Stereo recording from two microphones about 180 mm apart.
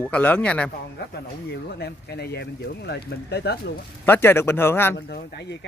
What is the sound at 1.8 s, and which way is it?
Speech, 65° left (ahead or behind).